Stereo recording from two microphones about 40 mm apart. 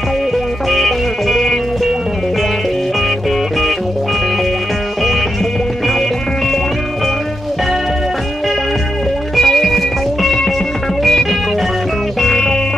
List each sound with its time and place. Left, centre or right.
0.7 s music: centre
9.4 s music: centre
12.2 s music: centre